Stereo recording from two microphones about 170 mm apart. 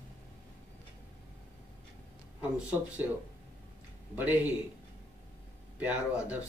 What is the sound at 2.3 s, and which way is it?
Speech, 10° right (ahead or behind).